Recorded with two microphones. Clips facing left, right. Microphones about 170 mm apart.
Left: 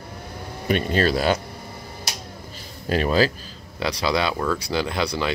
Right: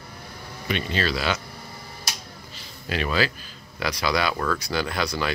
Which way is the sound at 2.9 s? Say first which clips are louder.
Left 5 dB; 40° left (ahead or behind).